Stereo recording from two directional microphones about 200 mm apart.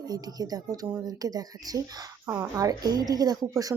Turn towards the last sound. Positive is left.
turn(degrees=-15)  # may be behind; listen again after turning